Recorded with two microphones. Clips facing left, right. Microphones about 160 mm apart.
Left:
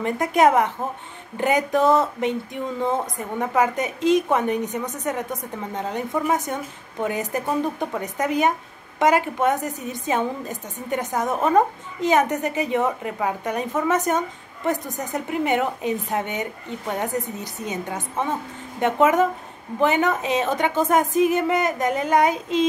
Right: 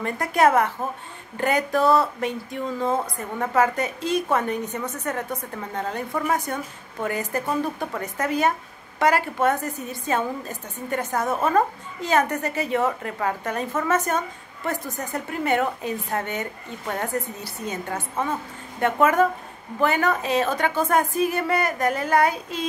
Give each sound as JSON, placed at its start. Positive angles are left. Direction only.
{"t": 0.0, "sound": "a woman's voice", "side_deg": 20}